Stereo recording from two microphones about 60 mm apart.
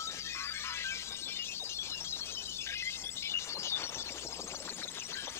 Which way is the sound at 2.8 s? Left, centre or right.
Left.